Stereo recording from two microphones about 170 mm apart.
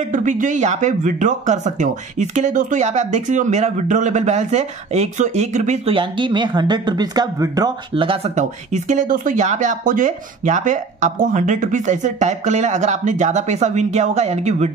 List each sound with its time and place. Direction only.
0.1 s speech: 45° right (ahead or behind)
5.9 s speech: 30° right (ahead or behind)